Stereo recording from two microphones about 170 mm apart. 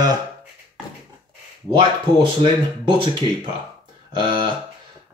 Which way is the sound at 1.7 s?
30° right (ahead or behind).